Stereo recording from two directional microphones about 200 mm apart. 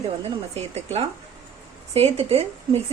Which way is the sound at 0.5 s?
30° right (ahead or behind).